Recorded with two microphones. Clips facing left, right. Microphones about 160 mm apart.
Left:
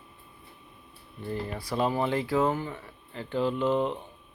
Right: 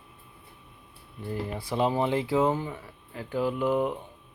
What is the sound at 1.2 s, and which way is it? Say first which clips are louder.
Speech: even; 10° right (ahead or behind).